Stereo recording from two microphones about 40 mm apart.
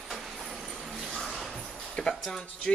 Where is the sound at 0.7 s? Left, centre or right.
Centre.